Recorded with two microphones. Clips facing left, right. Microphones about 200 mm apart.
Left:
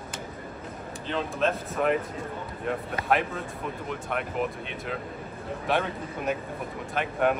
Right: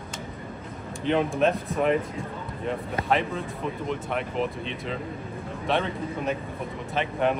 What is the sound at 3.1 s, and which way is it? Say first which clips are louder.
Speech: even; centre (ahead or behind).